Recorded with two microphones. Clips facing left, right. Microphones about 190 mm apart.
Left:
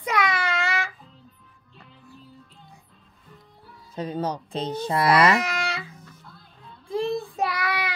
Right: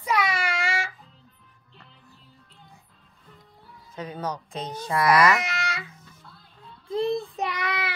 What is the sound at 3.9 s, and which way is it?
A child's voice, 30° left (ahead or behind).